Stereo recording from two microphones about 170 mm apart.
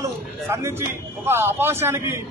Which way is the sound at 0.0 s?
15° right (ahead or behind).